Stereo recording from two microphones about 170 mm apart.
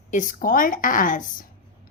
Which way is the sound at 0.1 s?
50° left (ahead or behind).